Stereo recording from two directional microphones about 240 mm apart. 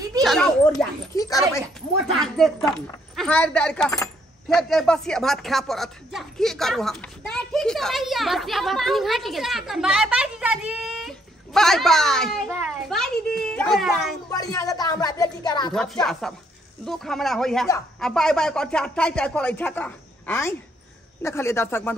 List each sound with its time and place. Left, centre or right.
0.2 s a sound: centre
1.1 s speech: centre
2.0 s speech: centre
14.3 s speech: centre
15.7 s speech: centre